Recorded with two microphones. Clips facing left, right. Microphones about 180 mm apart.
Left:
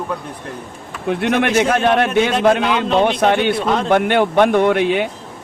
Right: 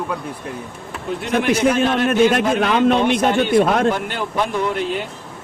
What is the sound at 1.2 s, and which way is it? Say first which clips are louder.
Speech: left 1 dB; 70° left (ahead or behind).